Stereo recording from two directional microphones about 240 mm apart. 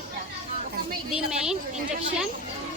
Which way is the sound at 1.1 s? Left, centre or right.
Centre.